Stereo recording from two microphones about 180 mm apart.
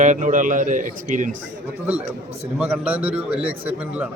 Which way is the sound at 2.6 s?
10° right (ahead or behind).